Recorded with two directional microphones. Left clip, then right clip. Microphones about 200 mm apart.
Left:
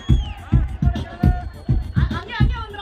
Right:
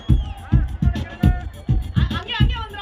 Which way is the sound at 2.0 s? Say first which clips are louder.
Right 2 dB; 50° right (ahead or behind).